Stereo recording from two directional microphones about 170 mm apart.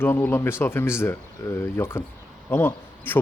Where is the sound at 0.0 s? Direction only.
10° left (ahead or behind).